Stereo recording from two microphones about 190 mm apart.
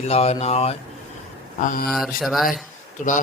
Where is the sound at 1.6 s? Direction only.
45° left (ahead or behind).